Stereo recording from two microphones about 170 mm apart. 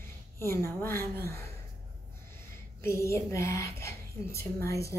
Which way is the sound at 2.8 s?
15° left (ahead or behind).